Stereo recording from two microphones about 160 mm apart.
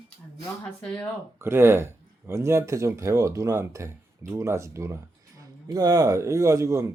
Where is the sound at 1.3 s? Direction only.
15° right (ahead or behind).